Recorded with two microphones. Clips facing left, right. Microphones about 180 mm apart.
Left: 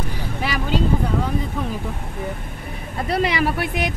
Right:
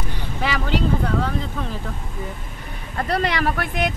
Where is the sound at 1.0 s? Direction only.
10° left (ahead or behind).